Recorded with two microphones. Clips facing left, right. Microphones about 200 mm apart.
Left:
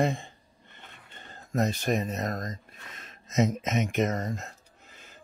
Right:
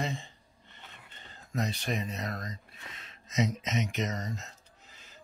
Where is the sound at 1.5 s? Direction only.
45° left (ahead or behind).